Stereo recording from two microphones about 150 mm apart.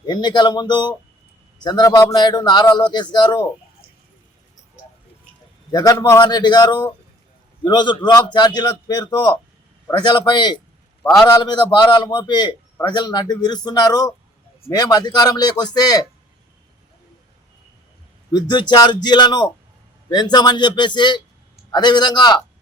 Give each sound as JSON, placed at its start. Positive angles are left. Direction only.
{"t": 0.0, "sound": "a man's voice", "side_deg": 30}
{"t": 5.7, "sound": "a man's voice", "side_deg": 25}
{"t": 18.3, "sound": "a man's voice", "side_deg": 30}